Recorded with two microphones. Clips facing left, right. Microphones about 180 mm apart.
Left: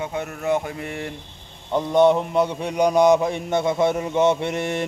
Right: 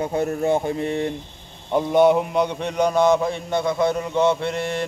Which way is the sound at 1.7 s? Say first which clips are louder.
Right 1 dB; 5° right (ahead or behind).